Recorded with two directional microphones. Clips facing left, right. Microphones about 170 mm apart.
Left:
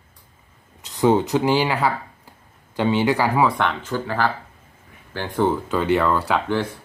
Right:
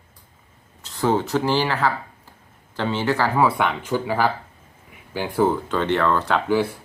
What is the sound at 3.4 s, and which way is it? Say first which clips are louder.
Speech: even; 10° right (ahead or behind).